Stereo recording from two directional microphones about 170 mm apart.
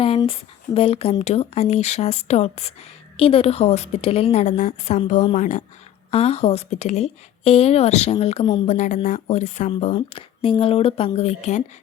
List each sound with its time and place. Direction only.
0.3 s speech: 35° left (ahead or behind)
6.1 s speech: 35° left (ahead or behind)
9.9 s speech: 35° left (ahead or behind)